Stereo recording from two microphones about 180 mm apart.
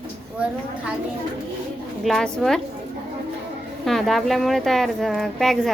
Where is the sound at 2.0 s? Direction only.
5° left (ahead or behind).